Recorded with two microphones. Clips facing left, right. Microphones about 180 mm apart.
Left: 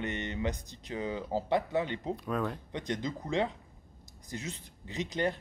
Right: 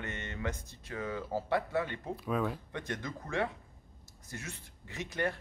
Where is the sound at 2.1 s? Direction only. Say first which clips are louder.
Right 1 dB; centre (ahead or behind).